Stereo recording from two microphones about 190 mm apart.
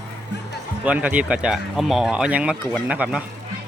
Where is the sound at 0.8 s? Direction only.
10° right (ahead or behind).